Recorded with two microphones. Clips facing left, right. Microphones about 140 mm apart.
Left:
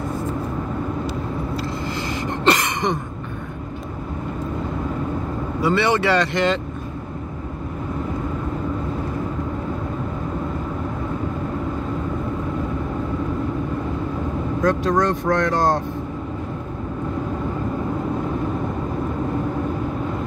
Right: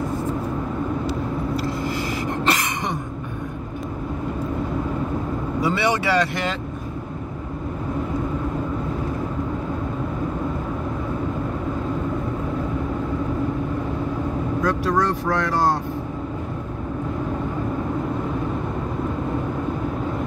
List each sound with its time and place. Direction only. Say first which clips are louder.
1.6 s a sound: right 1 dB; 5° right (ahead or behind)
5.6 s speech: left 3 dB; 10° right (ahead or behind)
14.6 s speech: left 3 dB; 10° right (ahead or behind)